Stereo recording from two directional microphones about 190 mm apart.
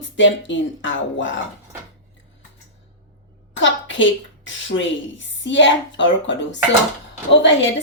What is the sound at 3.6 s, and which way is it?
Speech, 80° left.